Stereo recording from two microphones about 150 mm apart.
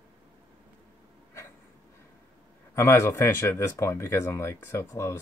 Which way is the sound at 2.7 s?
15° left (ahead or behind).